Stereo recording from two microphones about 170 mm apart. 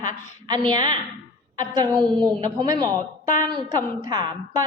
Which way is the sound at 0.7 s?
25° right (ahead or behind).